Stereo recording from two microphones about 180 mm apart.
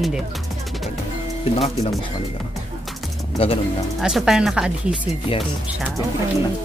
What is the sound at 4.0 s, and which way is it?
Speech, centre (ahead or behind).